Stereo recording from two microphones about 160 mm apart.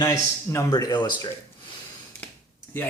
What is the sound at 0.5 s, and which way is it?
Speech, 25° left (ahead or behind).